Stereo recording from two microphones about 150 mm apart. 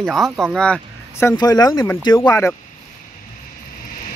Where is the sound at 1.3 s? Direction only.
25° left (ahead or behind).